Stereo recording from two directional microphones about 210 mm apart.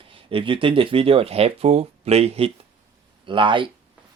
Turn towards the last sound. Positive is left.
turn(degrees=-25)  # may be behind; listen again after turning